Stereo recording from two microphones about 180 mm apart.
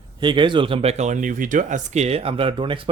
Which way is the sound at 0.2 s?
25° right (ahead or behind).